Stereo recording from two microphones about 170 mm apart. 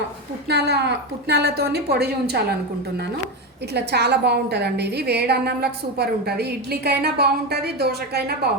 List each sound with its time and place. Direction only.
0.4 s a woman's voice: 75° right (ahead or behind)
3.8 s a woman's voice: 80° right